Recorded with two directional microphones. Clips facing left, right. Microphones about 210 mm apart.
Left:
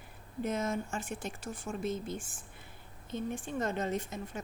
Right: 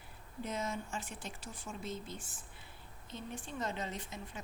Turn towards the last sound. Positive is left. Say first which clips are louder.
# left 8 dB
turn(degrees=45)  # may be behind; listen again after turning